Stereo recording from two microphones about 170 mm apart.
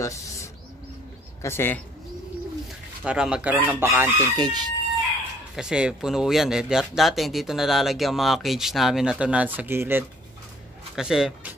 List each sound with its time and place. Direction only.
0.0 s bird: 20° left (ahead or behind)
1.4 s speech: 15° left (ahead or behind)
3.0 s chicken: 5° right (ahead or behind)
4.4 s speech: 25° right (ahead or behind)
5.6 s speech: 5° right (ahead or behind)